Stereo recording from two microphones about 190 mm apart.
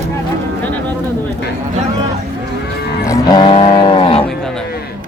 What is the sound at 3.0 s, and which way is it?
Livestock, 20° left (ahead or behind).